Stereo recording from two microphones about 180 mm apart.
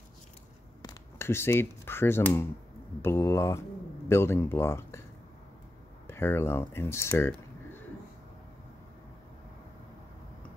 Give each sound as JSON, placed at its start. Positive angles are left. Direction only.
{"t": 0.8, "sound": "a sound", "side_deg": 15}
{"t": 3.0, "sound": "speech", "side_deg": 15}
{"t": 6.0, "sound": "speech", "side_deg": 15}